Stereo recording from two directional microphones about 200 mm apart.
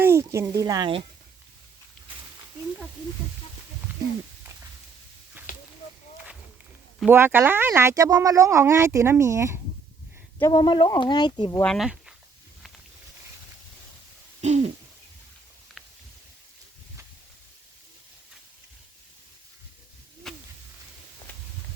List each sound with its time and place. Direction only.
0.0 s speech: 15° right (ahead or behind)
7.1 s speech: 10° right (ahead or behind)
10.3 s speech: 15° left (ahead or behind)
11.6 s speech: centre (ahead or behind)
14.4 s throat clearing: 35° right (ahead or behind)
15.8 s a sound: centre (ahead or behind)
20.3 s owl: centre (ahead or behind)